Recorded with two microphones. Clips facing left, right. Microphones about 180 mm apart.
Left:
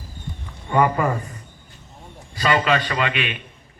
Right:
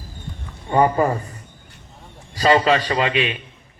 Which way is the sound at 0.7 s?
30° right (ahead or behind).